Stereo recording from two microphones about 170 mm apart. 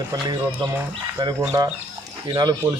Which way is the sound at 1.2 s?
25° right (ahead or behind).